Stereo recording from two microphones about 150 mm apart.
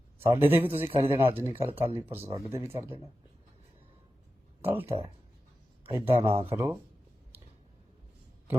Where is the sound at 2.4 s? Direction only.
20° right (ahead or behind).